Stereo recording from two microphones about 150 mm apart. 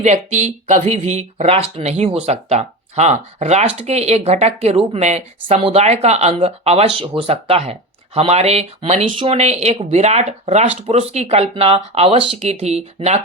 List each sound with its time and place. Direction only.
0.0 s speech: 50° right (ahead or behind)